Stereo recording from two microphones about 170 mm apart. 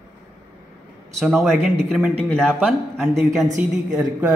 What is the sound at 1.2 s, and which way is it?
A man's voice, centre (ahead or behind).